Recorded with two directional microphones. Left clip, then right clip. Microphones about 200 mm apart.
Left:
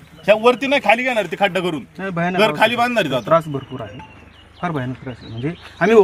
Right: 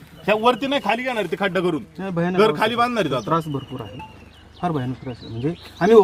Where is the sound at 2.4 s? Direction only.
50° left (ahead or behind).